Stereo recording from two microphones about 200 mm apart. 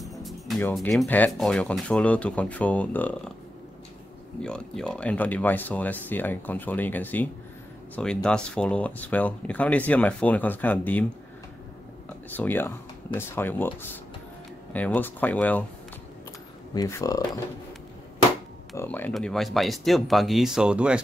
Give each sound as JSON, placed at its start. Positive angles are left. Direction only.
{"t": 0.0, "sound": "music", "side_deg": 0}
{"t": 0.6, "sound": "speech", "side_deg": 5}
{"t": 4.4, "sound": "speech", "side_deg": 5}
{"t": 12.4, "sound": "speech", "side_deg": 10}
{"t": 14.7, "sound": "speech", "side_deg": 10}
{"t": 16.7, "sound": "speech", "side_deg": 15}
{"t": 18.8, "sound": "speech", "side_deg": 10}